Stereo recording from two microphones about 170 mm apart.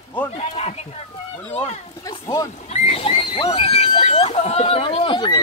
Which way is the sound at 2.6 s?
40° left (ahead or behind).